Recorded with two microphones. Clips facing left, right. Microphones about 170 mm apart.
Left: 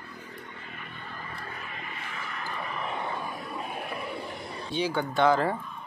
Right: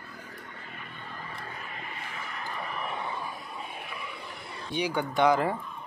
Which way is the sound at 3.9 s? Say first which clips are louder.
Left 6 dB; 45° left (ahead or behind).